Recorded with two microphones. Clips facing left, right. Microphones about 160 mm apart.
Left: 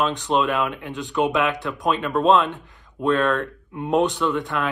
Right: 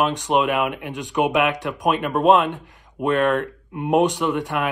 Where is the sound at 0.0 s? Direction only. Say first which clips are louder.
Right 1 dB; 15° right (ahead or behind).